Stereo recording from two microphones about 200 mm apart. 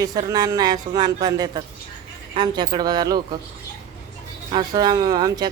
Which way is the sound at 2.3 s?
20° right (ahead or behind).